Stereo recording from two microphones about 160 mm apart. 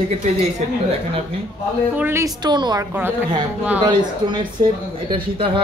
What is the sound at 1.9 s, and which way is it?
Speech, 15° right (ahead or behind).